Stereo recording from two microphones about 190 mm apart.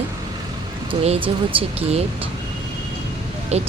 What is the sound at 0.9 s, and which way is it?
Speech, 30° right (ahead or behind).